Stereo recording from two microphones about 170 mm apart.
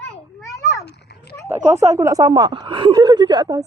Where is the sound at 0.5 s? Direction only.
20° left (ahead or behind).